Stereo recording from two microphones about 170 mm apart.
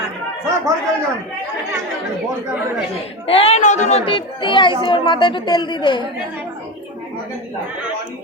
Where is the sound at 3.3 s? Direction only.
35° left (ahead or behind).